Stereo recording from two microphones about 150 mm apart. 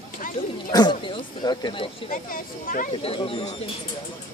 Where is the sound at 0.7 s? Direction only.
30° left (ahead or behind).